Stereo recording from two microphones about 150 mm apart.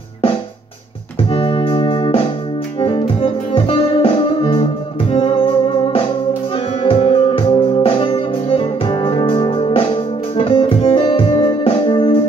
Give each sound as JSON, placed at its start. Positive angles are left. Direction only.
{"t": 1.3, "sound": "music", "side_deg": 40}
{"t": 6.8, "sound": "music", "side_deg": 40}